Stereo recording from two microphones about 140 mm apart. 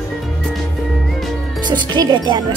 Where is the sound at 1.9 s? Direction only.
35° right (ahead or behind).